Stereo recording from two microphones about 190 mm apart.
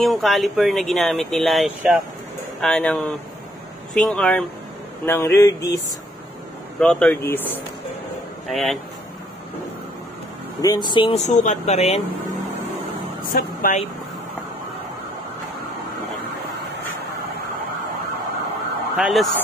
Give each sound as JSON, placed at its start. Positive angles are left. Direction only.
{"t": 0.0, "sound": "speech", "side_deg": 0}
{"t": 6.8, "sound": "speech", "side_deg": 5}
{"t": 8.5, "sound": "speech", "side_deg": 0}
{"t": 10.6, "sound": "speech", "side_deg": 20}
{"t": 13.3, "sound": "speech", "side_deg": 45}
{"t": 18.9, "sound": "speech", "side_deg": 0}